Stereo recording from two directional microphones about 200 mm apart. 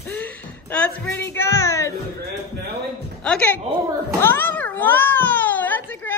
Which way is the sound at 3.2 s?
5° left (ahead or behind).